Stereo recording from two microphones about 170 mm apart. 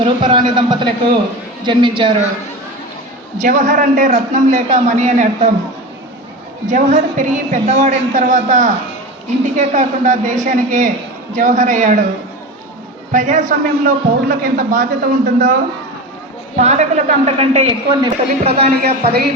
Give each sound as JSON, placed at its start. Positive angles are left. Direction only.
{"t": 0.0, "sound": "a man's voice", "side_deg": -30}
{"t": 3.3, "sound": "a man's voice", "side_deg": -45}
{"t": 6.7, "sound": "a man's voice", "side_deg": -45}
{"t": 13.1, "sound": "a man's voice", "side_deg": -50}
{"t": 16.6, "sound": "a woman's voice", "side_deg": -40}